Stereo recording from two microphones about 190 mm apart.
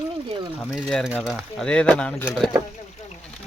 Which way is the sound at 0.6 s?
Centre (ahead or behind).